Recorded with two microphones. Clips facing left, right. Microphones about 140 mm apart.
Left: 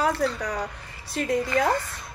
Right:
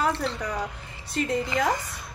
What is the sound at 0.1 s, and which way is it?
A woman's voice, 25° right (ahead or behind).